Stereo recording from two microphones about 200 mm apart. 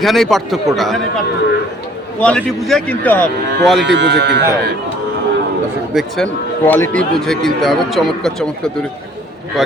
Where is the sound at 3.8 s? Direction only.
60° right (ahead or behind).